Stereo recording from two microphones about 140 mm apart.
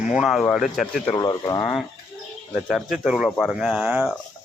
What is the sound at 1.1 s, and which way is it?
Speech, 25° left (ahead or behind).